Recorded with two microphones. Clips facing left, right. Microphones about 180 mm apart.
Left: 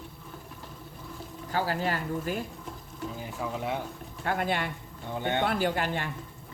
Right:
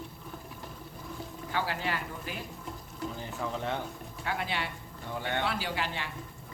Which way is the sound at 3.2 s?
10° left (ahead or behind).